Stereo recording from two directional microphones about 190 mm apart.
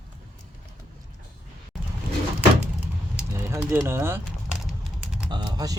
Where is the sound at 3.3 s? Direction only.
15° right (ahead or behind).